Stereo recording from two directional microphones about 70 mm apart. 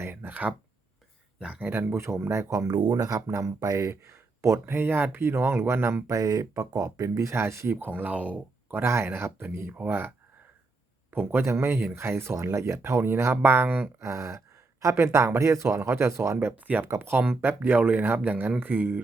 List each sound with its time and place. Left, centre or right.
0.0 s speech: right
1.6 s speech: right
2.0 s speech: right
2.6 s speech: right
6.1 s speech: right
7.7 s speech: right
8.8 s speech: right
11.1 s speech: right
14.0 s gasp: right
14.9 s speech: right
16.4 s speech: right